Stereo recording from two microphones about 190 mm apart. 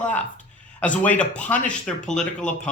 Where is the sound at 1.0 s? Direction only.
5° left (ahead or behind).